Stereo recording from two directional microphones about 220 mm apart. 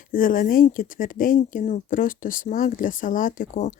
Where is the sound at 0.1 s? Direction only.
40° left (ahead or behind).